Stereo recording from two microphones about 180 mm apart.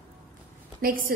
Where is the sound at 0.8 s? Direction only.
50° right (ahead or behind).